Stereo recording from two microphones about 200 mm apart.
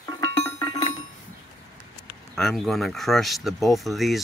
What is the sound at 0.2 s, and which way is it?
Chink, 20° left (ahead or behind).